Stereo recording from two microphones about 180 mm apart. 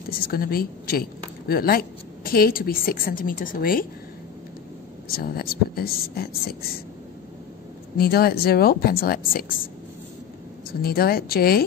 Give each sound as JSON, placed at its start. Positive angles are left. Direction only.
{"t": 0.1, "sound": "a woman's voice", "side_deg": 55}
{"t": 5.1, "sound": "speech", "side_deg": 55}
{"t": 8.0, "sound": "speech", "side_deg": 60}
{"t": 10.7, "sound": "speech", "side_deg": 55}